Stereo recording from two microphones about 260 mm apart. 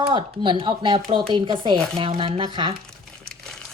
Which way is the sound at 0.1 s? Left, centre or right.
Centre.